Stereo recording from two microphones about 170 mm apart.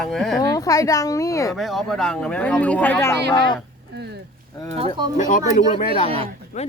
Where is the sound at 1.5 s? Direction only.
Centre (ahead or behind).